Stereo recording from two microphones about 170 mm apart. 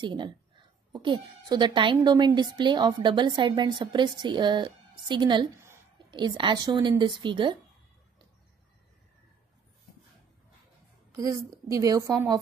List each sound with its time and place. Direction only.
0.0 s a woman's voice: 25° right (ahead or behind)
11.1 s a woman's voice: 20° right (ahead or behind)